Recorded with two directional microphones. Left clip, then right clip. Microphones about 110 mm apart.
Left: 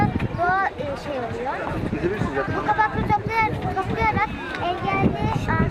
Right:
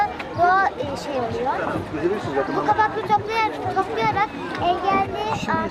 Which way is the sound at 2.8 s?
20° right (ahead or behind).